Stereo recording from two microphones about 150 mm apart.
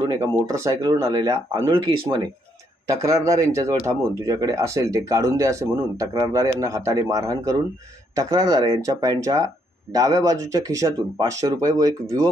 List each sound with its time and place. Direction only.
0.1 s speech: 20° right (ahead or behind)
2.9 s speech: 20° right (ahead or behind)